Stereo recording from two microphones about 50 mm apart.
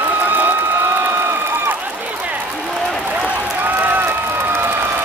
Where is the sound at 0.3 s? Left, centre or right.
Right.